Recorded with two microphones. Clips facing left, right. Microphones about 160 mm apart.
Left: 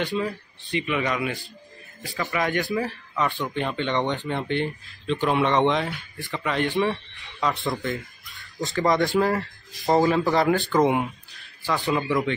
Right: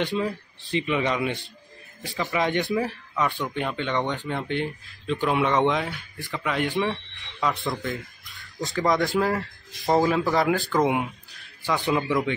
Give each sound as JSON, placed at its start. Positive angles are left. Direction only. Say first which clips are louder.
{"t": 0.0, "sound": "speech", "louder": "even", "side_deg": 0}
{"t": 0.7, "sound": "speech", "louder": "right 1 dB", "side_deg": -25}
{"t": 2.7, "sound": "speech", "louder": "right 1 dB", "side_deg": -5}
{"t": 7.7, "sound": "a sound", "louder": "left 2 dB", "side_deg": 0}
{"t": 8.7, "sound": "speech", "louder": "left 2 dB", "side_deg": 0}
{"t": 11.6, "sound": "speech", "louder": "even", "side_deg": -15}